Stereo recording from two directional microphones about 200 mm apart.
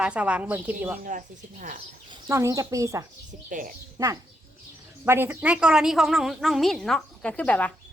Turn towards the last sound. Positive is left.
turn(degrees=5)  # may be behind; listen again after turning